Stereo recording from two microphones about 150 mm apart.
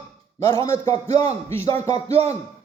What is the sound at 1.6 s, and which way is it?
Speech, 45° right (ahead or behind).